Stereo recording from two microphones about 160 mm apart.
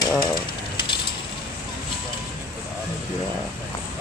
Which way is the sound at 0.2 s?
30° left (ahead or behind).